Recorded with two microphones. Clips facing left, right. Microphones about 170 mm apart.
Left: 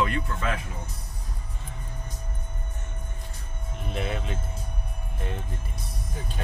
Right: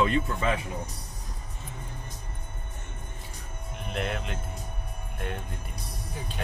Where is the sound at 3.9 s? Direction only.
Centre (ahead or behind).